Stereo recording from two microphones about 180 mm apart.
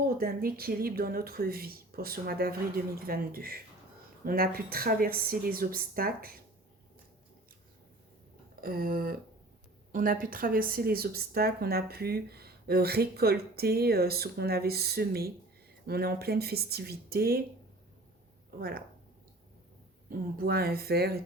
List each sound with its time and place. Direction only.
0.2 s a woman's voice: 55° right (ahead or behind)
8.6 s a woman's voice: 55° right (ahead or behind)
20.1 s a woman's voice: 55° right (ahead or behind)